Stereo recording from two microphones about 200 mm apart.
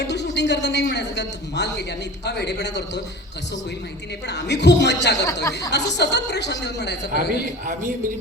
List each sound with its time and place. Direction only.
0.0 s a sound: 60° left (ahead or behind)
2.2 s a woman's voice: 55° left (ahead or behind)
4.3 s a woman's voice: 60° left (ahead or behind)
5.2 s speech: 15° left (ahead or behind)
5.7 s a woman's voice: 60° left (ahead or behind)